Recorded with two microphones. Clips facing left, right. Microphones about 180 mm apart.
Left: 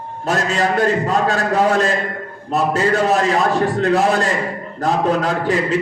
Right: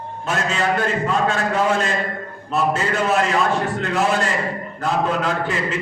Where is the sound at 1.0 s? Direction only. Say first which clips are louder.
Left 3 dB; 40° left (ahead or behind).